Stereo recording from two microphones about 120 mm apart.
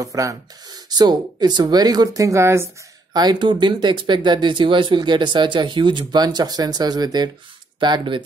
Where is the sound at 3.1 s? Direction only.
35° right (ahead or behind).